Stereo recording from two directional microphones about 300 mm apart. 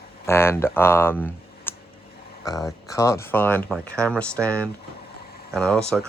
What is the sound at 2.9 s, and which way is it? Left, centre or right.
Speech, centre.